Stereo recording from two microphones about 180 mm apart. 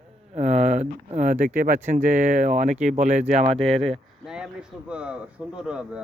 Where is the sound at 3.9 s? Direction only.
5° right (ahead or behind).